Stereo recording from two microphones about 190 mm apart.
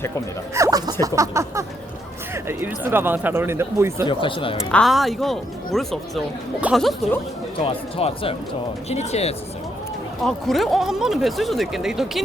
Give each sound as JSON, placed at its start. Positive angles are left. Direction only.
{"t": 0.5, "sound": "speech", "side_deg": -15}
{"t": 4.0, "sound": "speech", "side_deg": 25}
{"t": 4.7, "sound": "speech", "side_deg": 0}
{"t": 7.6, "sound": "speech", "side_deg": 30}
{"t": 10.2, "sound": "speech", "side_deg": 0}